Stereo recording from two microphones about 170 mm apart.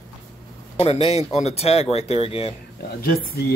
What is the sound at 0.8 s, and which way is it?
Speech, 35° left (ahead or behind).